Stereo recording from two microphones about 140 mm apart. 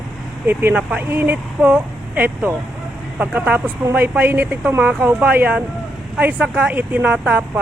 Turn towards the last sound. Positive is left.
turn(degrees=-10)  # may be behind; listen again after turning